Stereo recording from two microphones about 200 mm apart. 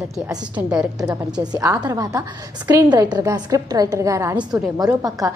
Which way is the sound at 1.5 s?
15° right (ahead or behind).